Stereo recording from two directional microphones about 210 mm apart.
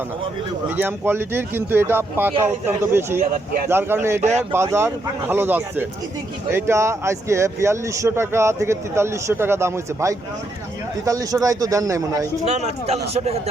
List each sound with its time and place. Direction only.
0.8 s speech: 10° right (ahead or behind)
4.2 s speech: 35° right (ahead or behind)
4.5 s speech: 10° right (ahead or behind)
12.5 s a man's voice: 30° right (ahead or behind)